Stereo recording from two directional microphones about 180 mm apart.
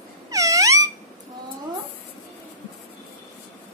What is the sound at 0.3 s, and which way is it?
Wail, 20° right (ahead or behind).